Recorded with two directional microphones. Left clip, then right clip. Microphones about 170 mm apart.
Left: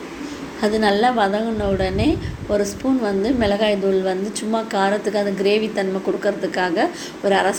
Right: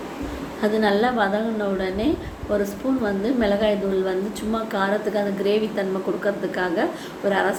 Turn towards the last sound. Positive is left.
turn(degrees=20)  # may be behind; listen again after turning